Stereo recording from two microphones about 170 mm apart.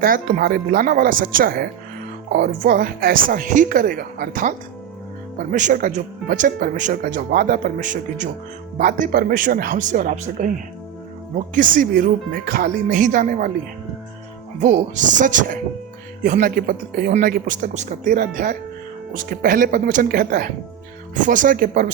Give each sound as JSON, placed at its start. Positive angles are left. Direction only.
{"t": 0.0, "sound": "speech", "side_deg": -55}
{"t": 14.6, "sound": "speech", "side_deg": -45}